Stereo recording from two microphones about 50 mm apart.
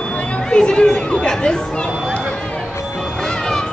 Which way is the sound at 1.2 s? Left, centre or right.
Centre.